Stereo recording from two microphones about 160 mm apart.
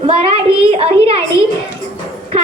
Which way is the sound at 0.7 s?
40° right (ahead or behind).